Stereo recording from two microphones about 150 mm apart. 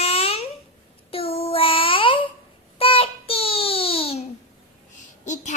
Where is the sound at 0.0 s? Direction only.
40° left (ahead or behind).